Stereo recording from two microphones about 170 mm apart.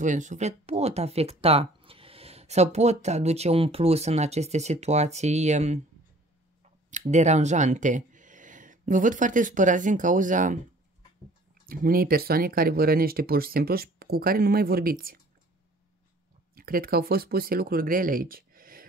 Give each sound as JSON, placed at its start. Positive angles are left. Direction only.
{"t": 0.0, "sound": "speech", "side_deg": -45}
{"t": 6.9, "sound": "speech", "side_deg": -45}
{"t": 11.6, "sound": "speech", "side_deg": -60}
{"t": 16.5, "sound": "speech", "side_deg": -60}